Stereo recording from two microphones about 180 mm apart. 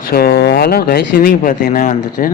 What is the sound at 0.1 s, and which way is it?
A man's voice, 60° left (ahead or behind).